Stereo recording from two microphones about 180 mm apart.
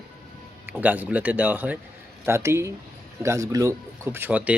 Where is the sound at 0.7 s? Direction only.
10° right (ahead or behind).